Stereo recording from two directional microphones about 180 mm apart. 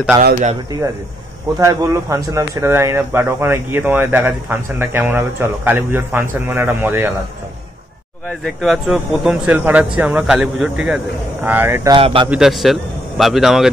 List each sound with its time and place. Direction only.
1.6 s speech: 20° right (ahead or behind)
8.3 s speech: centre (ahead or behind)
11.9 s speech: 30° right (ahead or behind)
12.3 s speech: centre (ahead or behind)